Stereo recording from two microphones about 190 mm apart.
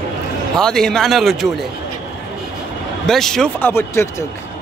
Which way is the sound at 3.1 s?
Centre (ahead or behind).